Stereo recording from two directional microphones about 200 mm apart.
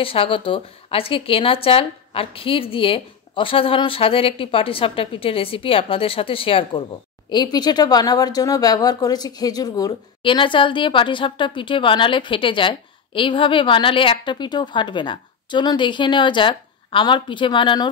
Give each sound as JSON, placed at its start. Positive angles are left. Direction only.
{"t": 0.0, "sound": "speech", "side_deg": 25}